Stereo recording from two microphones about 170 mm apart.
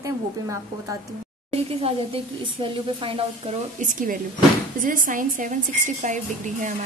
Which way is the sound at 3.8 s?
50° right (ahead or behind).